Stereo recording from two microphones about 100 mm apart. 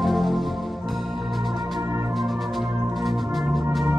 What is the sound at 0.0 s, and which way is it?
Music, centre (ahead or behind).